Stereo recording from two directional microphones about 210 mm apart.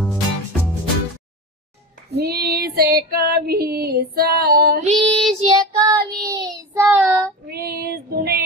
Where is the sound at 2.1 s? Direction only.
50° right (ahead or behind).